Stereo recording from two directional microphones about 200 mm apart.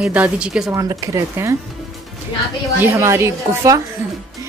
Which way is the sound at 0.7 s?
15° right (ahead or behind).